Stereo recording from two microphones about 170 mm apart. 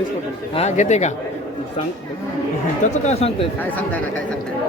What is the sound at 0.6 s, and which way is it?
Speech, 45° left (ahead or behind).